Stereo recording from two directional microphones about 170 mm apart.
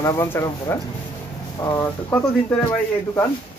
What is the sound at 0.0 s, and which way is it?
Speech, 15° left (ahead or behind).